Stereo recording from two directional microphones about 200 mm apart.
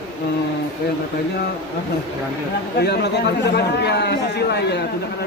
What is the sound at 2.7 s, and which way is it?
Speech, 55° left (ahead or behind).